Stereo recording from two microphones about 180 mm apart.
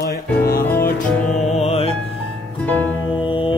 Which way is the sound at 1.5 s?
35° left (ahead or behind).